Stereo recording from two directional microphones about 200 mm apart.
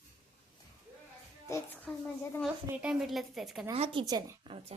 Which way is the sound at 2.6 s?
5° right (ahead or behind).